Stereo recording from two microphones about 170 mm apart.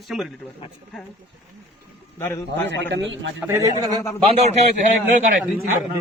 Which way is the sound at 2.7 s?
90° right.